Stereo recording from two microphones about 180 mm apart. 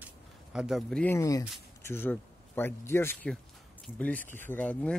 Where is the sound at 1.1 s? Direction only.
20° left (ahead or behind).